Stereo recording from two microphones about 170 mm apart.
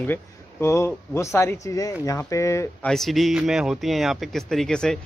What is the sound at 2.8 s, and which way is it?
Speech, centre (ahead or behind).